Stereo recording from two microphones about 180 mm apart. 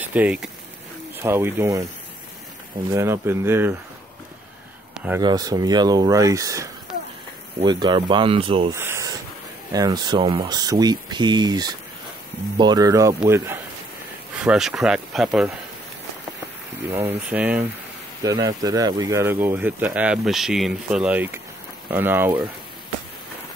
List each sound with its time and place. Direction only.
0.0 s speech: 10° right (ahead or behind)
2.9 s speech: 15° right (ahead or behind)
4.9 s a sound: 5° right (ahead or behind)
5.2 s speech: 20° right (ahead or behind)
8.7 s a sound: 15° right (ahead or behind)
9.7 s speech: 20° right (ahead or behind)
14.4 s speech: 5° right (ahead or behind)
16.9 s speech: 10° right (ahead or behind)
18.2 s speech: 20° right (ahead or behind)